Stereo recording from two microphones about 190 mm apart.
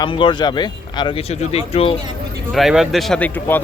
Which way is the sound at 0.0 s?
25° left (ahead or behind).